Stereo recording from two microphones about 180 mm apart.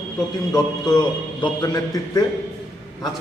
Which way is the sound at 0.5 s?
20° left (ahead or behind).